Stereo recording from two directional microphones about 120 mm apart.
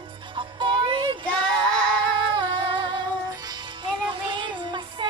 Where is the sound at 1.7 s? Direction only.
5° left (ahead or behind).